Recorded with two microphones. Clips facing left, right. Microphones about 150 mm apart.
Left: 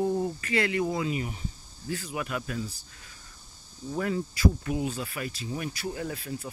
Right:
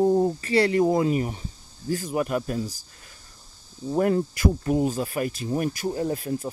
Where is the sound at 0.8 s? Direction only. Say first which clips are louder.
Right 8 dB; 45° right (ahead or behind).